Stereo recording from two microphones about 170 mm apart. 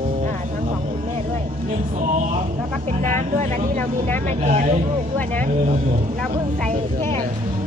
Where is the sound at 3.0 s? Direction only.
50° right (ahead or behind).